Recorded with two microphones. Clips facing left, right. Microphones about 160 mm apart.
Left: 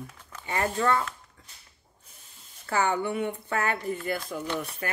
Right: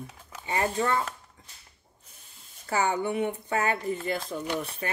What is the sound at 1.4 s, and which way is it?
Whip, 20° right (ahead or behind).